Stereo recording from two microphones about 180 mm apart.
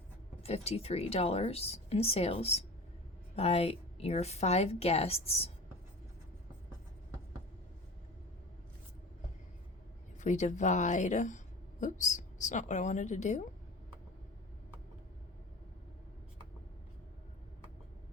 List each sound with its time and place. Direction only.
0.4 s speech: 35° left (ahead or behind)
10.2 s a woman's voice: 40° left (ahead or behind)